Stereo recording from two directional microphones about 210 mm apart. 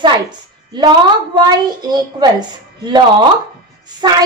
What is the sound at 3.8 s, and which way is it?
Music, 20° right (ahead or behind).